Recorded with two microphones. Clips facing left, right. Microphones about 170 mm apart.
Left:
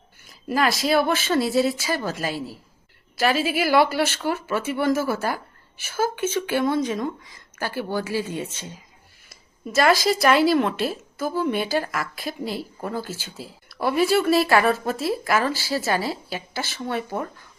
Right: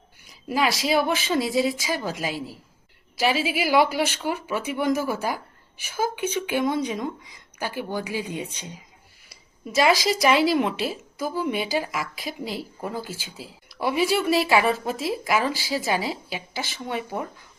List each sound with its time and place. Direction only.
0.4 s speech: 10° right (ahead or behind)
9.9 s speech: 50° left (ahead or behind)
10.5 s speech: 10° right (ahead or behind)
13.7 s a sound: 15° right (ahead or behind)
14.0 s speech: 10° right (ahead or behind)